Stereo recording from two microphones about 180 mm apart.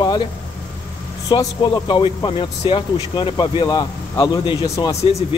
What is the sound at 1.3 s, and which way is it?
A man's voice, 25° left (ahead or behind).